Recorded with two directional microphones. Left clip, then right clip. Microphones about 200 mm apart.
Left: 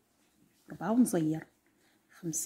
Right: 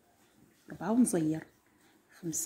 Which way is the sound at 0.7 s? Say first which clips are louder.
Even; 15° left (ahead or behind).